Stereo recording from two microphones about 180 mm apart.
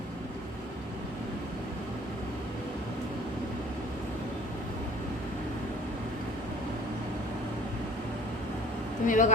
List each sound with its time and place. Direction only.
9.0 s speech: 45° left (ahead or behind)